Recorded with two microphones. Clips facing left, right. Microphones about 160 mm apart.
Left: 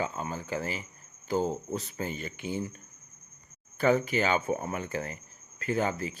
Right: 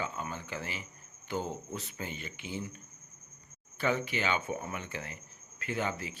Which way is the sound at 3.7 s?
45° left (ahead or behind).